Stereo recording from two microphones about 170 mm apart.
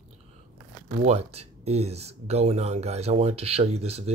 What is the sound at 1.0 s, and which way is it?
Speech, 40° right (ahead or behind).